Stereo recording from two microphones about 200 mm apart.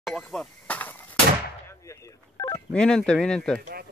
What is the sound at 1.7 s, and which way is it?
Telephone dialing, 15° left (ahead or behind).